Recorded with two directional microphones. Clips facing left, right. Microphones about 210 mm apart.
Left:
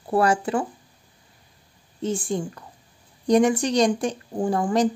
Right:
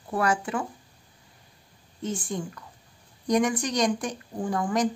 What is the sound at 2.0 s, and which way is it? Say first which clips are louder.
Speech: left 5 dB; 30° left (ahead or behind).